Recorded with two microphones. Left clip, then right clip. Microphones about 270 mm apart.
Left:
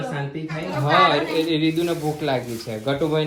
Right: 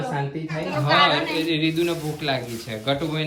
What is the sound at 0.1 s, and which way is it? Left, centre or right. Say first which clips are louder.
Speech: right 1 dB; centre.